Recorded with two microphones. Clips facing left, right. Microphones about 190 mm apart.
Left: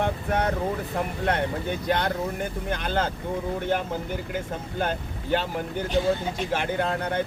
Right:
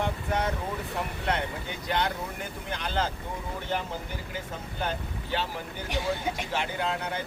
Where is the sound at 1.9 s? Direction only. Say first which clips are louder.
Left 3 dB; 55° left (ahead or behind).